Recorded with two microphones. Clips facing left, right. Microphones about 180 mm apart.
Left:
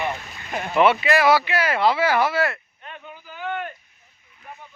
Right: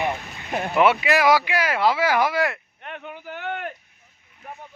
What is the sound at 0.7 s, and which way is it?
Speech, 10° right (ahead or behind).